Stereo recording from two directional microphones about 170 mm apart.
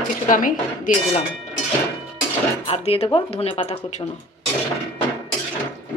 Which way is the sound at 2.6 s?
35° left (ahead or behind).